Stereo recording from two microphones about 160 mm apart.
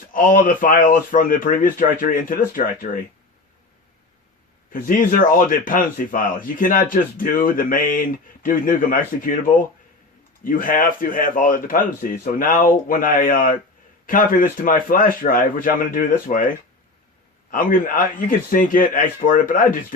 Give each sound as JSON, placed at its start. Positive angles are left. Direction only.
{"t": 0.1, "sound": "a man's voice", "side_deg": 60}
{"t": 4.7, "sound": "a man's voice", "side_deg": 60}
{"t": 10.4, "sound": "a man's voice", "side_deg": 60}
{"t": 17.5, "sound": "a man's voice", "side_deg": 60}